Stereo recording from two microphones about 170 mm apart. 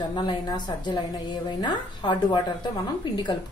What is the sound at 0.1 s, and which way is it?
A woman's voice, 25° left (ahead or behind).